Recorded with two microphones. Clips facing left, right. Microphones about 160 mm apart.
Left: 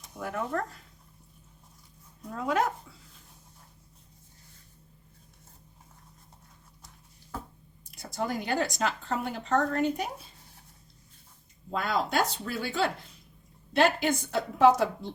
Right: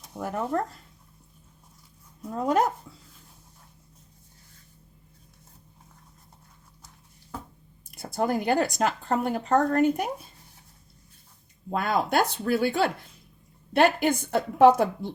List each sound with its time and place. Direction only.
0.2 s speech: 40° right (ahead or behind)
2.4 s speech: 40° right (ahead or behind)
7.9 s speech: 55° right (ahead or behind)
11.7 s speech: 55° right (ahead or behind)